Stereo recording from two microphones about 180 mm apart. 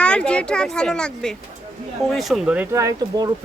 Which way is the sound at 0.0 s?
5° left (ahead or behind).